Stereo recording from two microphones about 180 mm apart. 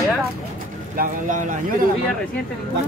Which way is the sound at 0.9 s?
45° right (ahead or behind).